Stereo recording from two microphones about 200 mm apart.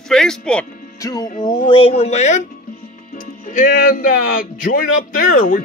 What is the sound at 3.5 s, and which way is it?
Speech, 40° left (ahead or behind).